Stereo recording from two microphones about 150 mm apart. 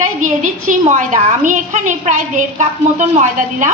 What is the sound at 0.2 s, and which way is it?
A woman's voice, 55° right (ahead or behind).